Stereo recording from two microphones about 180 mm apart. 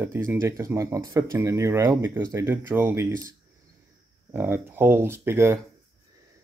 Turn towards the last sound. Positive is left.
turn(degrees=-15)  # may be behind; listen again after turning